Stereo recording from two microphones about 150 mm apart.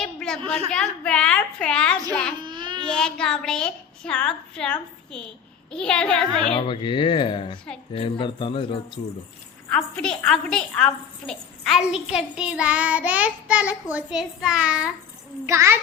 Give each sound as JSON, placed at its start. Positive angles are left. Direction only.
{"t": 0.0, "sound": "a sound", "side_deg": 5}
{"t": 0.7, "sound": "a woman's voice", "side_deg": 5}
{"t": 2.4, "sound": "a sound", "side_deg": -30}
{"t": 2.8, "sound": "a woman's voice", "side_deg": 5}
{"t": 6.5, "sound": "speech", "side_deg": 35}
{"t": 9.6, "sound": "a woman's voice", "side_deg": 5}
{"t": 15.4, "sound": "a child's voice", "side_deg": -20}